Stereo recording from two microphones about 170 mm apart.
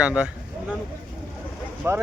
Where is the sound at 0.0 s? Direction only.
5° right (ahead or behind).